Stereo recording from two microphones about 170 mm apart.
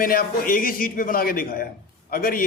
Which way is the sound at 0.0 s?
55° left (ahead or behind).